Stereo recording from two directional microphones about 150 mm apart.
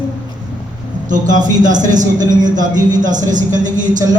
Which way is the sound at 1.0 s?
60° right (ahead or behind).